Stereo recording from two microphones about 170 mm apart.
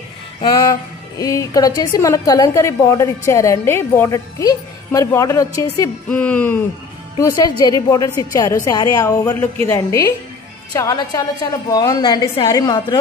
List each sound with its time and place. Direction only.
0.4 s a woman's voice: 20° left (ahead or behind)
6.0 s speech: 10° left (ahead or behind)
7.2 s a woman's voice: 20° left (ahead or behind)